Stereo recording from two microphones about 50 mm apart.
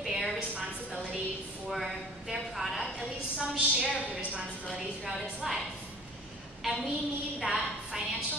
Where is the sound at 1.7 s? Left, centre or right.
Centre.